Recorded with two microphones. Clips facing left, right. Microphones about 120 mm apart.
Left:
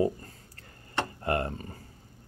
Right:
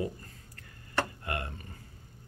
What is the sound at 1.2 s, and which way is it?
Speech, 35° left (ahead or behind).